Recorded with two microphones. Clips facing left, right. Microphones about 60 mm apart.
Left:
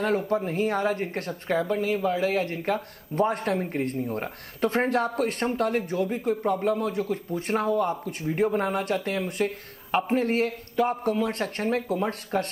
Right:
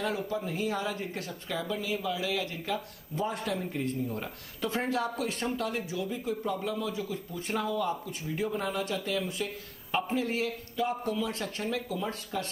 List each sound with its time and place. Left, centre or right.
0.3 s speech: left